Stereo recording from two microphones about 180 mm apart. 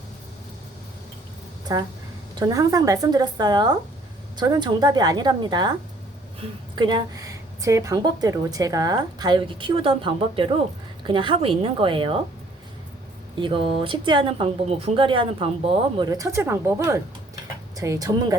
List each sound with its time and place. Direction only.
1.7 s a woman's voice: 20° right (ahead or behind)
6.7 s a woman's voice: 25° right (ahead or behind)
13.4 s a woman's voice: 30° right (ahead or behind)
16.0 s a woman's voice: 20° right (ahead or behind)